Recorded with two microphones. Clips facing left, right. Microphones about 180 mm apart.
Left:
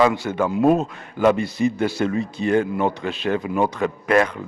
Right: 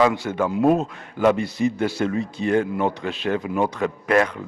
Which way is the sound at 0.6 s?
30° left (ahead or behind).